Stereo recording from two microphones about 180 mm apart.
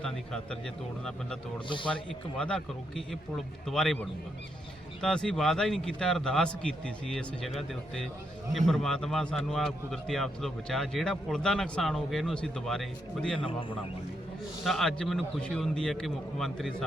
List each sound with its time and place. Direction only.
0.0 s a man's voice: 5° left (ahead or behind)
1.6 s a man's voice: 25° left (ahead or behind)
2.4 s a man's voice: 5° left (ahead or behind)
13.4 s a man's voice: 30° left (ahead or behind)
14.6 s a man's voice: centre (ahead or behind)